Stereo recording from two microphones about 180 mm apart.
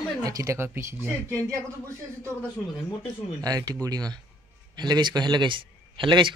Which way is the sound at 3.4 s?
20° right (ahead or behind).